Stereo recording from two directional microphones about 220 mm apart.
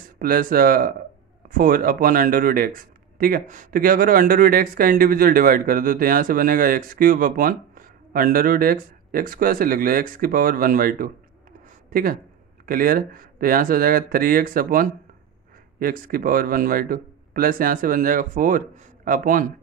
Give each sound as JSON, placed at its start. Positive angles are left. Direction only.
{"t": 0.2, "sound": "speech", "side_deg": -40}